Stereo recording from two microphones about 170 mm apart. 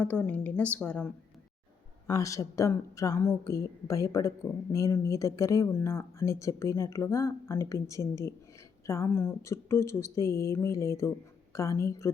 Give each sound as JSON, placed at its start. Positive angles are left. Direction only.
{"t": 0.0, "sound": "speech", "side_deg": 10}
{"t": 2.0, "sound": "a woman's voice", "side_deg": 20}